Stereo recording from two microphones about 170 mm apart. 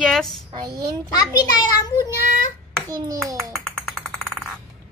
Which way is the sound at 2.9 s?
20° right (ahead or behind).